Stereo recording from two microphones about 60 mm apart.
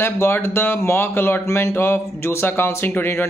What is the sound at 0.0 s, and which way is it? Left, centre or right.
A man's voice, left.